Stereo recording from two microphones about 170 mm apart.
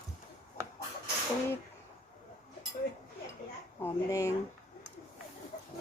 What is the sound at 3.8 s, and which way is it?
Speech, 15° left (ahead or behind).